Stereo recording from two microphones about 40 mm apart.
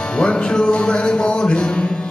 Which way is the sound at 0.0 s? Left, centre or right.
Left.